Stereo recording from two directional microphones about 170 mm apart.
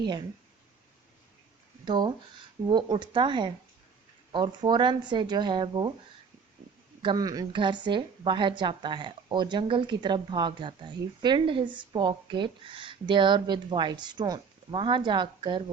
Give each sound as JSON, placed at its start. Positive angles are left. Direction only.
{"t": 1.8, "sound": "a woman's voice", "side_deg": -25}
{"t": 7.0, "sound": "a woman's voice", "side_deg": -25}